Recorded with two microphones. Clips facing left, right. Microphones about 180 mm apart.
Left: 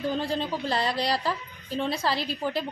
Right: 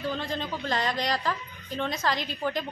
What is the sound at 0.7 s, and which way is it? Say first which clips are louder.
Speech: even; 35° left (ahead or behind).